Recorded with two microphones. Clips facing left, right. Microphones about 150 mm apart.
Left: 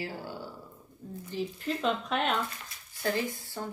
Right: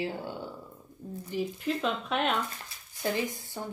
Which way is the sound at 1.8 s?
Centre (ahead or behind).